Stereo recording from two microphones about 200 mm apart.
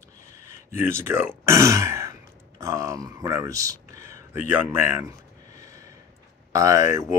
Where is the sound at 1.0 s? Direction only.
10° right (ahead or behind).